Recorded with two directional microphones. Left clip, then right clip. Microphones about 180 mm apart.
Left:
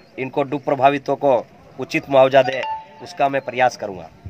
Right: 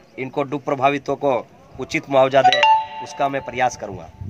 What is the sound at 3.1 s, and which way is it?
Speech, 10° left (ahead or behind).